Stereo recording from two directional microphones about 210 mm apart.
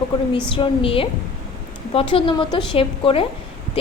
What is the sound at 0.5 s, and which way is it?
Speech, 25° left (ahead or behind).